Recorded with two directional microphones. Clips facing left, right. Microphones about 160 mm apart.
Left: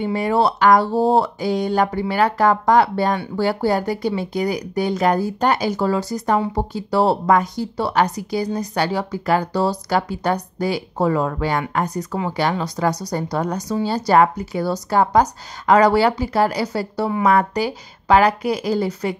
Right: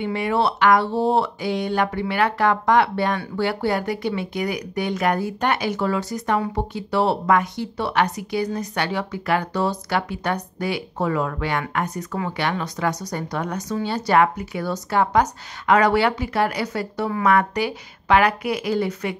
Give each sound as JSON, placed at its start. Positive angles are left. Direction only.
{"t": 0.0, "sound": "speech", "side_deg": 40}